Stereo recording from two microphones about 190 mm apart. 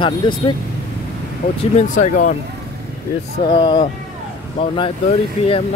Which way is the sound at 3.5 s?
25° left (ahead or behind).